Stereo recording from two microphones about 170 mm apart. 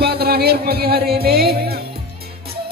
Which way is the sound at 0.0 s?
70° right (ahead or behind).